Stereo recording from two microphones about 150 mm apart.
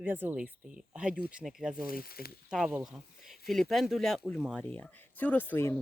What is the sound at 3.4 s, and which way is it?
Speech, centre (ahead or behind).